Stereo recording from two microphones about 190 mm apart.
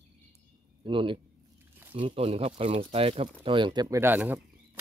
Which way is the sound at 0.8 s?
25° right (ahead or behind).